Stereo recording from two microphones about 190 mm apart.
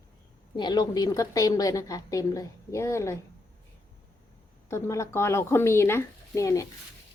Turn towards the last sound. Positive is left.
turn(degrees=15)  # may be behind; listen again after turning